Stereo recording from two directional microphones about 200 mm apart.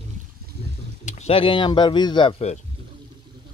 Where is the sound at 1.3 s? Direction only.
25° left (ahead or behind).